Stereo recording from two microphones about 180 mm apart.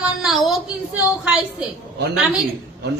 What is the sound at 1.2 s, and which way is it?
Speech, 5° right (ahead or behind).